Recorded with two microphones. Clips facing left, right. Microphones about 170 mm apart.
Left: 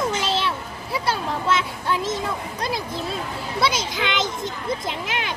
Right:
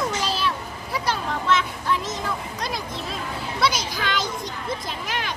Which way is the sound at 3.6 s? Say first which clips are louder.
Left 1 dB; 25° left (ahead or behind).